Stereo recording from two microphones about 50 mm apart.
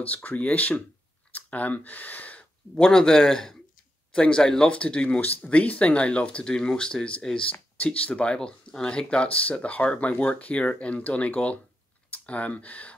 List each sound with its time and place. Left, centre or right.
0.0 s speech: left
2.7 s speech: centre
4.6 s speech: left
7.8 s speech: left